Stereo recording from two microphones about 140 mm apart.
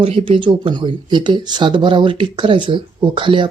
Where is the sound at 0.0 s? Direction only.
45° right (ahead or behind).